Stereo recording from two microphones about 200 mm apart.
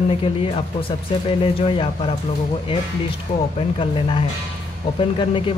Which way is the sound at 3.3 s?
35° left (ahead or behind).